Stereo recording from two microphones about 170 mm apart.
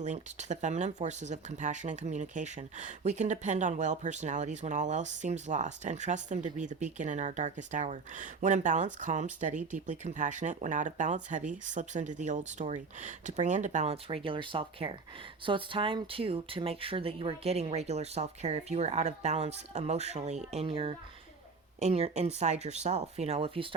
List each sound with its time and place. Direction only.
0.0 s speech: 45° right (ahead or behind)